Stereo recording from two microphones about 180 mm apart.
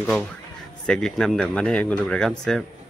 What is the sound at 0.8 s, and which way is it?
A man's voice, 5° left (ahead or behind).